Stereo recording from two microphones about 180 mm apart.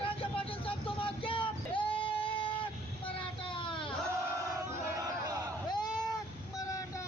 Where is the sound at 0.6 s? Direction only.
30° left (ahead or behind).